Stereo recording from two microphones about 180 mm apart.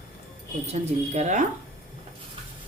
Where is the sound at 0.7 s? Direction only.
40° right (ahead or behind).